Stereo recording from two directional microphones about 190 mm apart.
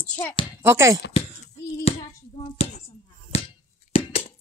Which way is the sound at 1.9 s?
30° left (ahead or behind).